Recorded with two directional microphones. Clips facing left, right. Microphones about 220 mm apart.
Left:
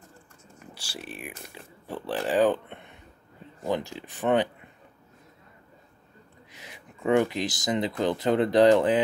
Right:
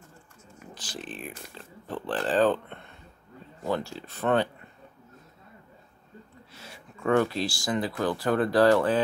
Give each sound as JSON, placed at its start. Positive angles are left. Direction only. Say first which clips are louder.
{"t": 0.7, "sound": "speech", "louder": "right 1 dB", "side_deg": 10}
{"t": 6.5, "sound": "speech", "louder": "even", "side_deg": 15}